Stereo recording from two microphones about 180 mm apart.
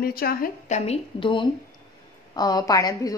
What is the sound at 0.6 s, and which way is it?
A woman's voice, 35° left (ahead or behind).